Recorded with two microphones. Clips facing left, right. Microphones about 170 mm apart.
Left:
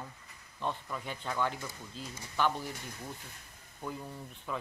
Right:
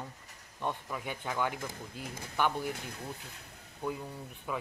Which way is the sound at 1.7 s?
55° right (ahead or behind).